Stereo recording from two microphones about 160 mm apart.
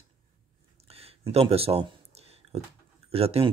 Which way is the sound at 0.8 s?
40° right (ahead or behind).